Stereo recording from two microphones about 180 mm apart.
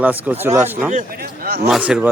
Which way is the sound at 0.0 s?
10° right (ahead or behind).